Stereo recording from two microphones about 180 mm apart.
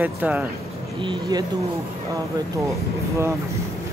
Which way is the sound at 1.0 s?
25° right (ahead or behind).